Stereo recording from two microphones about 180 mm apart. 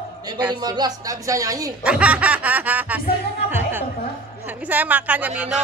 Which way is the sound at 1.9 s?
5° right (ahead or behind).